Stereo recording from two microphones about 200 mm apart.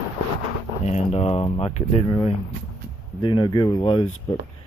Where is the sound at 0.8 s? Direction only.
35° left (ahead or behind).